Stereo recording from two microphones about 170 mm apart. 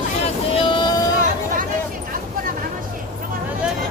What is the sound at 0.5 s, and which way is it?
Boat, 30° left (ahead or behind).